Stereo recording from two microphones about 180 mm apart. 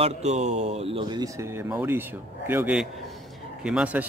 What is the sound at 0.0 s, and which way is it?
Speech, 40° right (ahead or behind).